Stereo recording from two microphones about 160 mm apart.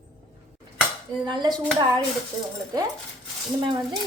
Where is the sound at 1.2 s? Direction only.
30° right (ahead or behind).